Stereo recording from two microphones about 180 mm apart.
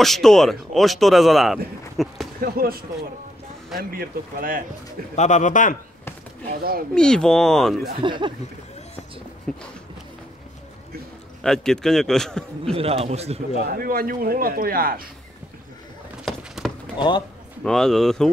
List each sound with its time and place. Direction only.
0.0 s speech: centre (ahead or behind)
2.4 s speech: 55° right (ahead or behind)
5.1 s speech: 40° left (ahead or behind)
6.9 s speech: 5° left (ahead or behind)
8.0 s speech: 25° right (ahead or behind)
9.5 s speech: centre (ahead or behind)
11.4 s speech: 5° left (ahead or behind)
12.7 s a man's voice: 35° right (ahead or behind)
13.7 s speech: 55° right (ahead or behind)
16.3 s horse: centre (ahead or behind)
17.6 s speech: centre (ahead or behind)